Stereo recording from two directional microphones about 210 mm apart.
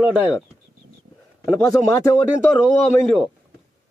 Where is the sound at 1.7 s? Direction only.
15° left (ahead or behind).